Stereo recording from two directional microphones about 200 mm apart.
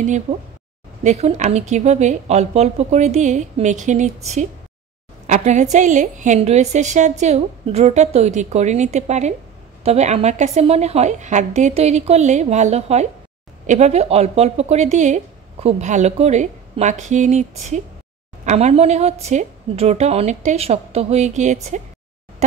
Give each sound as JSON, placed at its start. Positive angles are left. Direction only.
{"t": 0.0, "sound": "speech", "side_deg": -35}